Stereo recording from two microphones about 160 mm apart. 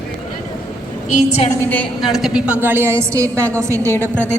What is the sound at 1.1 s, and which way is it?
Speech, 45° left (ahead or behind).